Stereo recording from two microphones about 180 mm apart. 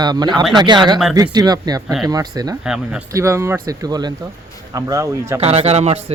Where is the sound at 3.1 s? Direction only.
15° right (ahead or behind).